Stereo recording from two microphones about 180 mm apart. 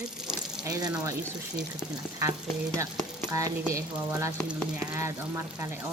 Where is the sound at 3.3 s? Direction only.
15° right (ahead or behind).